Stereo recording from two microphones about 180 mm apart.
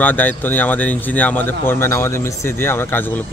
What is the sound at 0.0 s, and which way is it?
Speech, 10° left (ahead or behind).